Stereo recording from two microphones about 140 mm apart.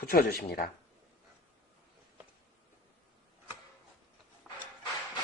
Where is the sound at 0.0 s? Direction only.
90° left.